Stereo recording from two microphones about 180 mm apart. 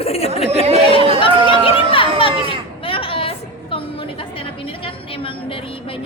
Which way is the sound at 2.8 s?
30° left (ahead or behind).